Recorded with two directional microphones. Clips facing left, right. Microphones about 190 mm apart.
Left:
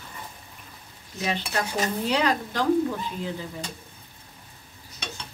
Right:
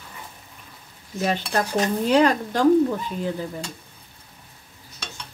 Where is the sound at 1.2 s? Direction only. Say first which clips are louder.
Right 4 dB; 45° right (ahead or behind).